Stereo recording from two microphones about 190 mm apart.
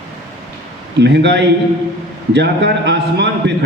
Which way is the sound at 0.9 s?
65° right (ahead or behind).